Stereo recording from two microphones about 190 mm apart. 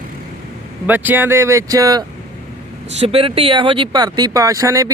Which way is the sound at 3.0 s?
30° right (ahead or behind).